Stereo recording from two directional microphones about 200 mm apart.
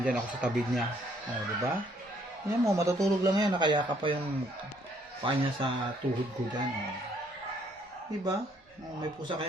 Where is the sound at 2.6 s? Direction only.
15° right (ahead or behind).